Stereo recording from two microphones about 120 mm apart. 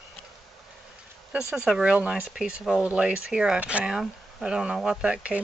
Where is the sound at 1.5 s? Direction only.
5° right (ahead or behind).